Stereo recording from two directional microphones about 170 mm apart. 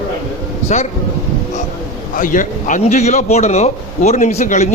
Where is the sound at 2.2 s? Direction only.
50° left (ahead or behind).